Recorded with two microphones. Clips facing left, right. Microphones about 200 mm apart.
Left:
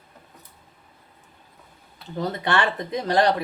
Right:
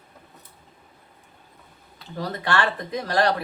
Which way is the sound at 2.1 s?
20° left (ahead or behind).